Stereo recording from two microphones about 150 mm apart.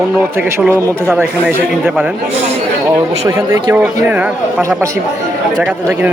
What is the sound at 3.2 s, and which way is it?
Speech, 25° right (ahead or behind).